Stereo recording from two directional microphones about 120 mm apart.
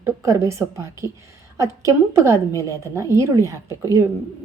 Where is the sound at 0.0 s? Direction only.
25° right (ahead or behind).